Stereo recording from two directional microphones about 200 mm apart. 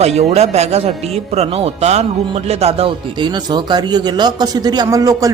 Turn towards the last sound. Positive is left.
turn(degrees=-15)  # may be behind; listen again after turning